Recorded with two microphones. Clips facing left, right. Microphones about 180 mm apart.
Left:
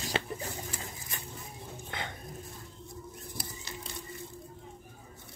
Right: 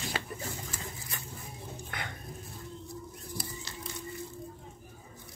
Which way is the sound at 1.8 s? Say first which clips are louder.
Left 3 dB; 20° left (ahead or behind).